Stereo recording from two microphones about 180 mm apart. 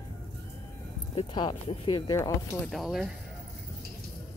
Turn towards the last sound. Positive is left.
turn(degrees=0)  # may be behind; listen again after turning